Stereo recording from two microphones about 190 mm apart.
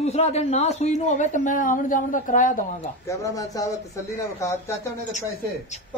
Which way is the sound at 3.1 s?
15° left (ahead or behind).